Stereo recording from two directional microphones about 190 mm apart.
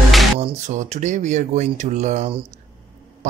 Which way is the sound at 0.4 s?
40° right (ahead or behind).